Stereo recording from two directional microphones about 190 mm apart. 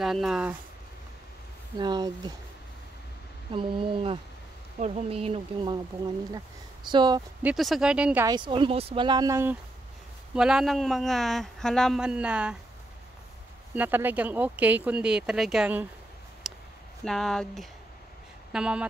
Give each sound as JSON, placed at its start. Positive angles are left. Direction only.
{"t": 0.0, "sound": "a man's voice", "side_deg": 0}
{"t": 1.8, "sound": "speech", "side_deg": -20}
{"t": 3.5, "sound": "speech", "side_deg": -25}
{"t": 6.9, "sound": "speech", "side_deg": -20}
{"t": 7.4, "sound": "a man's voice", "side_deg": 0}
{"t": 8.3, "sound": "speech", "side_deg": -25}
{"t": 10.3, "sound": "a man's voice", "side_deg": -5}
{"t": 13.7, "sound": "speech", "side_deg": -10}
{"t": 16.5, "sound": "a sound", "side_deg": 0}
{"t": 17.0, "sound": "a man's voice", "side_deg": 0}